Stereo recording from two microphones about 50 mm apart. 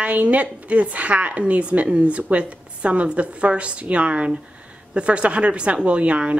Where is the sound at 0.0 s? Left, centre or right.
Right.